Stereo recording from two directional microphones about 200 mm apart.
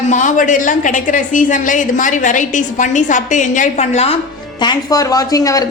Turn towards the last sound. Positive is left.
turn(degrees=15)  # may be behind; listen again after turning